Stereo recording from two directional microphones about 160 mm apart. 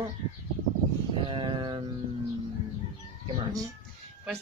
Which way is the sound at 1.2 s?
30° right (ahead or behind).